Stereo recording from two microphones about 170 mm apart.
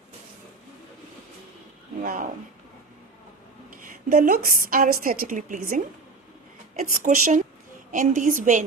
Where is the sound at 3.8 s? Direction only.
55° right (ahead or behind).